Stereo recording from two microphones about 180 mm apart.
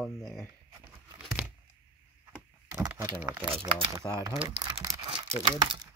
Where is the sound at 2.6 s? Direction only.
10° right (ahead or behind).